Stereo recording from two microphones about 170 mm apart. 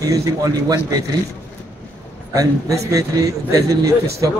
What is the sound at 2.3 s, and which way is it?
A man's voice, 20° right (ahead or behind).